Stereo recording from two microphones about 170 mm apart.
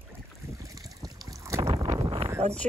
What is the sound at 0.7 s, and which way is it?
Boat, 20° right (ahead or behind).